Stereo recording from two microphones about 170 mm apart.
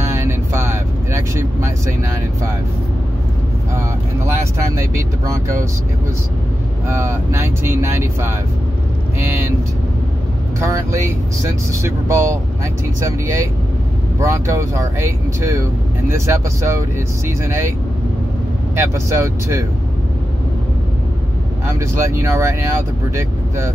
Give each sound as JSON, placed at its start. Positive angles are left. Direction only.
{"t": 0.0, "sound": "vehicle", "side_deg": -15}
{"t": 4.7, "sound": "speech", "side_deg": -15}
{"t": 6.9, "sound": "speech", "side_deg": -15}
{"t": 10.6, "sound": "speech", "side_deg": -15}
{"t": 18.8, "sound": "speech", "side_deg": -15}
{"t": 21.7, "sound": "speech", "side_deg": -15}